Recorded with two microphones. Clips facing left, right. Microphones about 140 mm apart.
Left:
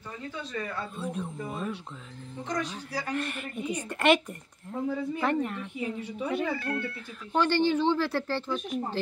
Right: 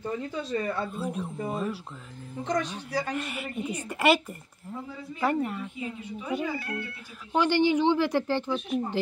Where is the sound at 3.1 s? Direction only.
5° right (ahead or behind).